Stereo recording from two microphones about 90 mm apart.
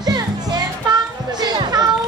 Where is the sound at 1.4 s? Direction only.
50° right (ahead or behind).